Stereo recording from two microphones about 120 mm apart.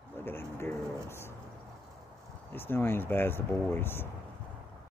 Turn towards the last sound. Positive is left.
turn(degrees=20)  # may be behind; listen again after turning